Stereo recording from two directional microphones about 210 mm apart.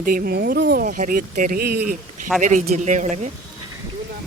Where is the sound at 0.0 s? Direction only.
45° right (ahead or behind).